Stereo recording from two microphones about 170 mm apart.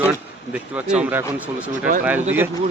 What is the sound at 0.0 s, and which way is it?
Speech, 10° right (ahead or behind).